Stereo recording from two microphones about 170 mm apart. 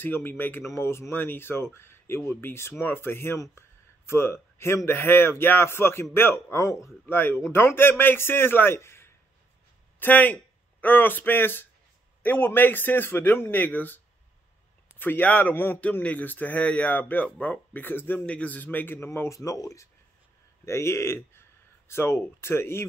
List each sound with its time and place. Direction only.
0.0 s a man's voice: 10° left (ahead or behind)